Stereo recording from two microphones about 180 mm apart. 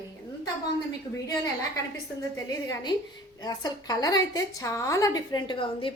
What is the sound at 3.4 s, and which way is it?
A woman's voice, 20° left (ahead or behind).